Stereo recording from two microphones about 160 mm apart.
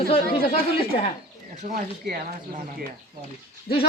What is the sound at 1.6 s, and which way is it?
Speech, 45° right (ahead or behind).